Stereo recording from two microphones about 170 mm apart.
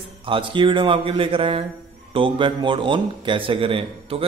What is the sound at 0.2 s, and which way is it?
A man's voice, 30° right (ahead or behind).